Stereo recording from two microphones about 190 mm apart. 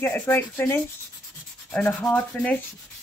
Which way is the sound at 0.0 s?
10° left (ahead or behind).